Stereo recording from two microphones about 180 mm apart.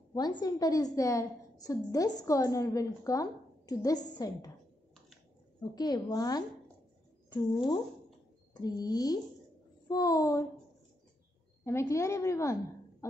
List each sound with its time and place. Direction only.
0.1 s a woman's voice: 20° left (ahead or behind)
5.6 s a woman's voice: 20° left (ahead or behind)
11.6 s a woman's voice: 15° left (ahead or behind)